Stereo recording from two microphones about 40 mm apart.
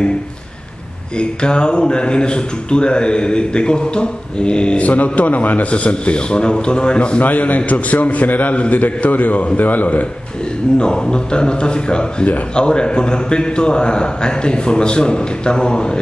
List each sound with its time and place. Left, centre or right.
1.1 s speech: left
4.8 s a man's voice: left
5.7 s speech: left
7.2 s a man's voice: left
10.8 s speech: left